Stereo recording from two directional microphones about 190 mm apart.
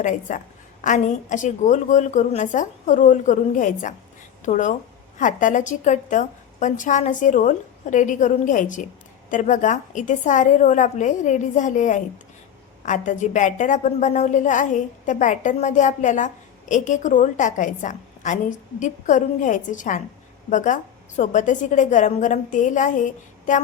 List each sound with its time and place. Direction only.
0.0 s a woman's voice: 40° left (ahead or behind)